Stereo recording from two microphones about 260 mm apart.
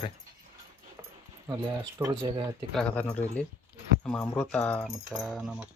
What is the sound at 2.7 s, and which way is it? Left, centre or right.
Speech, centre.